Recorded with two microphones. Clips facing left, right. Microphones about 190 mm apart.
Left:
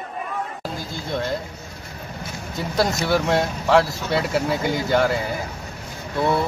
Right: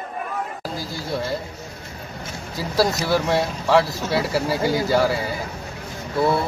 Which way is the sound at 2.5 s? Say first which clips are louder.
Right 1 dB; 5° right (ahead or behind).